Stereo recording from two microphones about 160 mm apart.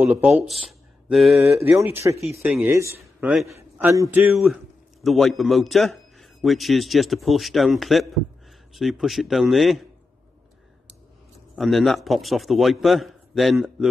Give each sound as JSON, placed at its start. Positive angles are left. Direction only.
{"t": 0.0, "sound": "speech", "side_deg": -10}
{"t": 1.5, "sound": "speech", "side_deg": -15}
{"t": 2.4, "sound": "a man's voice", "side_deg": -5}
{"t": 2.7, "sound": "speech", "side_deg": -20}
{"t": 3.2, "sound": "a man's voice", "side_deg": -5}
{"t": 3.5, "sound": "a man's voice", "side_deg": -15}
{"t": 5.0, "sound": "a man's voice", "side_deg": 0}
{"t": 11.5, "sound": "a man's voice", "side_deg": 0}